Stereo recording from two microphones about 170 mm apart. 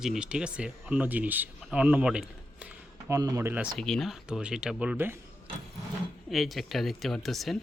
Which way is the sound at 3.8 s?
Centre (ahead or behind).